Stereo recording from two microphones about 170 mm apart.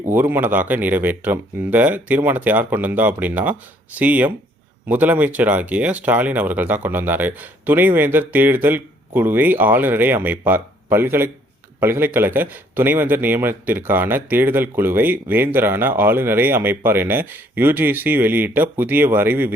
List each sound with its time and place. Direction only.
0.0 s speech: 10° right (ahead or behind)